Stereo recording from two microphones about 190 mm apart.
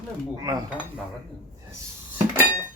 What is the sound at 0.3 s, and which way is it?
Speech, 20° right (ahead or behind).